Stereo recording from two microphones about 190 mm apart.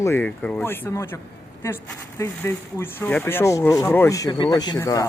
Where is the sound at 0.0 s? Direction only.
10° left (ahead or behind).